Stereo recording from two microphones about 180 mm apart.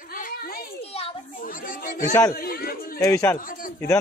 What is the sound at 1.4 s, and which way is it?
Chatter, 50° left (ahead or behind).